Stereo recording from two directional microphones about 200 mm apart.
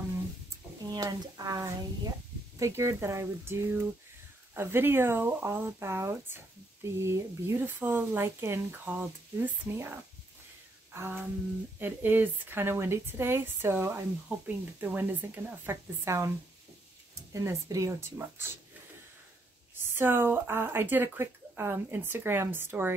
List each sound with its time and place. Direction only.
0.8 s speech: 20° right (ahead or behind)
10.9 s a sound: 10° right (ahead or behind)
11.8 s speech: 10° right (ahead or behind)
20.0 s speech: 10° right (ahead or behind)